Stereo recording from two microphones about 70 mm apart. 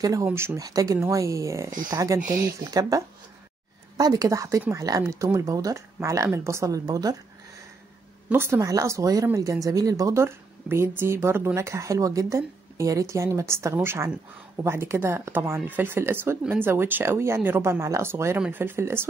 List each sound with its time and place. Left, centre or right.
0.0 s speech: right
1.1 s speech: right
8.3 s speech: right
8.6 s speech: right
10.2 s speech: right